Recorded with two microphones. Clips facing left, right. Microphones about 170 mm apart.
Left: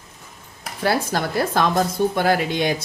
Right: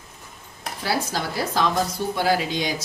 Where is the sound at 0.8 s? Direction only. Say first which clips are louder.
Left 5 dB; 55° left (ahead or behind).